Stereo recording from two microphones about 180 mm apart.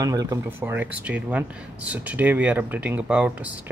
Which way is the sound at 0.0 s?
20° right (ahead or behind).